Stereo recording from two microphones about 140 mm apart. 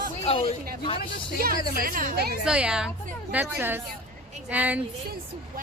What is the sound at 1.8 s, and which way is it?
Speech, 85° right.